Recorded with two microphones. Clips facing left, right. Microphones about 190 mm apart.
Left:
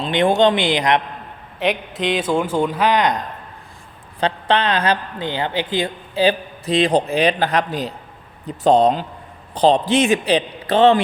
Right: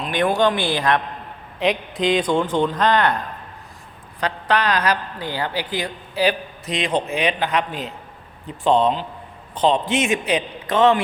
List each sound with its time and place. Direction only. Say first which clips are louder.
0.0 s a woman's voice: left 3 dB; 25° left (ahead or behind)
1.5 s a man's voice: even; centre (ahead or behind)
4.2 s a woman's voice: left 3 dB; 25° left (ahead or behind)